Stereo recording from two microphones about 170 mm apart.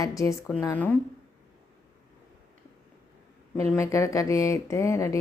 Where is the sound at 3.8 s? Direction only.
15° left (ahead or behind).